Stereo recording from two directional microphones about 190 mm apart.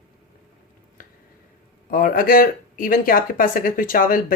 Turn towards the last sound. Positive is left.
turn(degrees=45)  # may be behind; listen again after turning